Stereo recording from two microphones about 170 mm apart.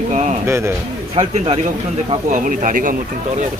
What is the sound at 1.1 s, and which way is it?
Speech, 35° right (ahead or behind).